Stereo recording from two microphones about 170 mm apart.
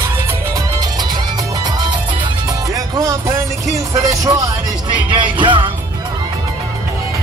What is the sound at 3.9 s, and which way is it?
Music, 20° right (ahead or behind).